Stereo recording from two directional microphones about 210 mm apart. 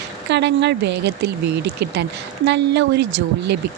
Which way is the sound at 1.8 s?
55° right (ahead or behind).